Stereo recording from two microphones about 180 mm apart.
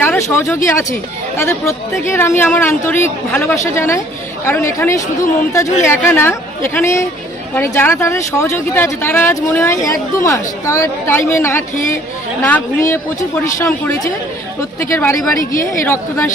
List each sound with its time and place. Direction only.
0.0 s speech: 10° left (ahead or behind)